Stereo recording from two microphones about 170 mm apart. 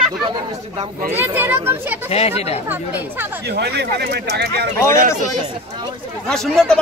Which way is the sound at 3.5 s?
75° right (ahead or behind).